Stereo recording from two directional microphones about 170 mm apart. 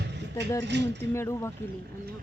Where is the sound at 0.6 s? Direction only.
85° right.